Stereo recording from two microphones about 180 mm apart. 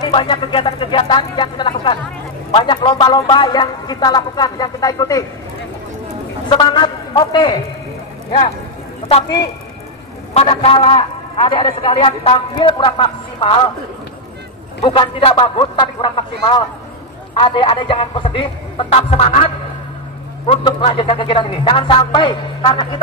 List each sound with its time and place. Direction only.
0.0 s a man's voice: 30° left (ahead or behind)
6.5 s a man's voice: 25° left (ahead or behind)
10.3 s a man's voice: 30° left (ahead or behind)
14.8 s a man's voice: 30° left (ahead or behind)
17.4 s a man's voice: 30° left (ahead or behind)